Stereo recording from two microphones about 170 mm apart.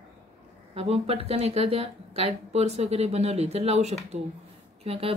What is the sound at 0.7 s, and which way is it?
Speech, 35° right (ahead or behind).